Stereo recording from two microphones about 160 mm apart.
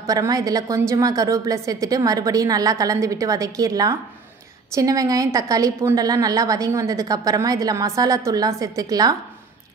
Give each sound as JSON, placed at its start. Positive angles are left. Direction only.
{"t": 0.0, "sound": "a woman's voice", "side_deg": -20}